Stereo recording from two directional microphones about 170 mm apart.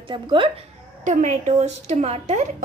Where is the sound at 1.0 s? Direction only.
45° right (ahead or behind).